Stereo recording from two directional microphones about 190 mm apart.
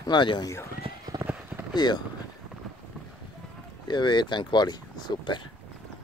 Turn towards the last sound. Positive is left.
turn(degrees=25)  # may be behind; listen again after turning